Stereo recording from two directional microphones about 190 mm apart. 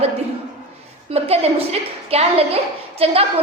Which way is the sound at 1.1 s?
35° right (ahead or behind).